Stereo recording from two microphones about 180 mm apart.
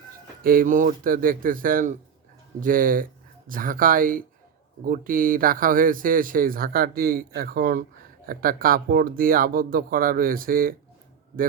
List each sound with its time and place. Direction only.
0.4 s speech: 50° right (ahead or behind)